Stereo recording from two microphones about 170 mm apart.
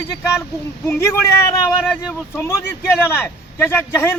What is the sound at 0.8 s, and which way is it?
Speech, 15° left (ahead or behind).